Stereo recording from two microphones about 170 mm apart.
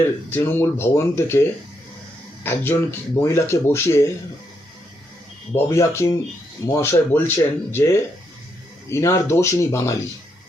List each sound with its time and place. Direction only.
0.3 s speech: 10° left (ahead or behind)
5.5 s speech: 15° left (ahead or behind)